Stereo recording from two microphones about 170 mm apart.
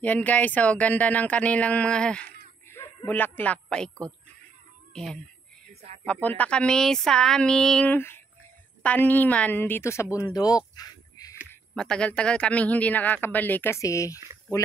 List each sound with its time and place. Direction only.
0.0 s speech: 10° left (ahead or behind)
6.2 s speech: 10° left (ahead or behind)
10.3 s a sound: 20° left (ahead or behind)
11.7 s speech: 5° left (ahead or behind)